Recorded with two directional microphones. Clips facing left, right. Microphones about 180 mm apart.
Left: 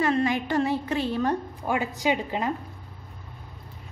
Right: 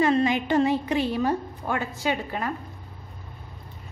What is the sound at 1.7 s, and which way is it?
Speech, 15° left (ahead or behind).